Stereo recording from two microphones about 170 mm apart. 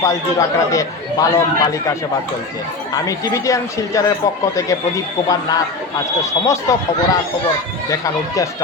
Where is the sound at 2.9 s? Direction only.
20° left (ahead or behind).